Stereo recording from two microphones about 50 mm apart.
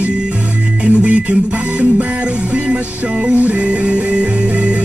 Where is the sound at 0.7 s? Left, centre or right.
Right.